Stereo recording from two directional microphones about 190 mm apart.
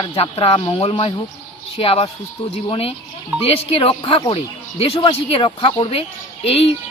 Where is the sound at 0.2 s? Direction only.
30° left (ahead or behind).